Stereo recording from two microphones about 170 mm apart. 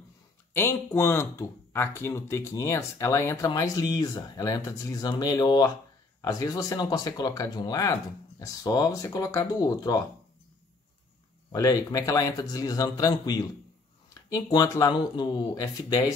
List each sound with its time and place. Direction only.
0.5 s speech: 15° left (ahead or behind)
11.5 s speech: 20° left (ahead or behind)